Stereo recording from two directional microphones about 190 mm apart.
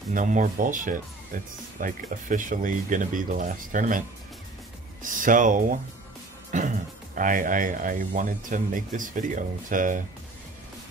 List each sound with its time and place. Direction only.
0.1 s speech: 45° right (ahead or behind)
5.0 s speech: 45° right (ahead or behind)